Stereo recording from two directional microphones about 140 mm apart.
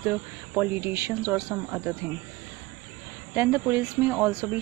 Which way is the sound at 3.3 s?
15° right (ahead or behind).